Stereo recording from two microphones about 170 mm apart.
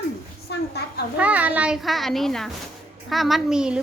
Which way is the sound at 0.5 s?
80° left.